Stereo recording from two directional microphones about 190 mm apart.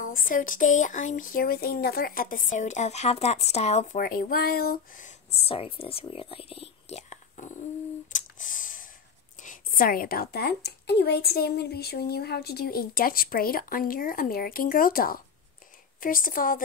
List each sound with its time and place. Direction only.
0.0 s a woman's voice: 45° left (ahead or behind)
4.0 s speech: 50° left (ahead or behind)
8.1 s clicking: 45° left (ahead or behind)
9.4 s a woman's voice: 45° left (ahead or behind)